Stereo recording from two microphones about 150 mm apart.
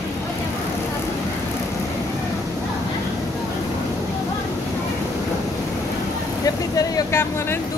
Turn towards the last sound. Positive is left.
turn(degrees=15)  # may be behind; listen again after turning